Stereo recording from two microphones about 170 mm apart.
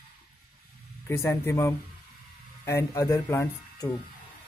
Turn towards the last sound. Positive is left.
turn(degrees=15)  # may be behind; listen again after turning